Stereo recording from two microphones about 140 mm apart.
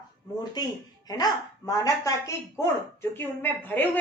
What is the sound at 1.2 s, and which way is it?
Speech, 25° left (ahead or behind).